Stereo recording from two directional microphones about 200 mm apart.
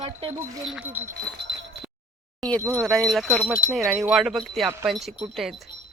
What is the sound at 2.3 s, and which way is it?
Speech, 5° left (ahead or behind).